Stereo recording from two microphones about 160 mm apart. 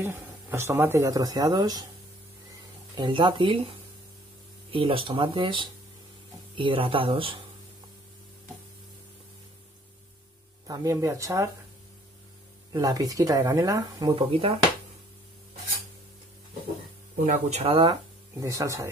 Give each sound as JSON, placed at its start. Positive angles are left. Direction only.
{"t": 0.0, "sound": "speech", "side_deg": -15}
{"t": 3.0, "sound": "speech", "side_deg": -30}
{"t": 10.7, "sound": "speech", "side_deg": -20}
{"t": 12.7, "sound": "speech", "side_deg": -20}
{"t": 17.2, "sound": "speech", "side_deg": -40}
{"t": 18.4, "sound": "speech", "side_deg": -20}